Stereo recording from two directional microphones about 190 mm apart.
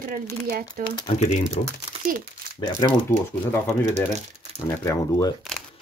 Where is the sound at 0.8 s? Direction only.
40° right (ahead or behind).